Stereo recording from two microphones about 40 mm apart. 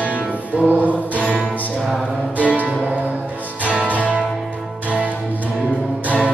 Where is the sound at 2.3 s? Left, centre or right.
Right.